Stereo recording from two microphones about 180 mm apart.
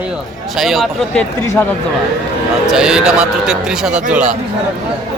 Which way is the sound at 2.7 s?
5° right (ahead or behind).